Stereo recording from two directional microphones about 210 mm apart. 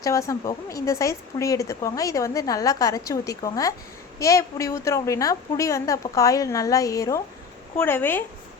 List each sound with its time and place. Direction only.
0.0 s a woman's voice: 15° left (ahead or behind)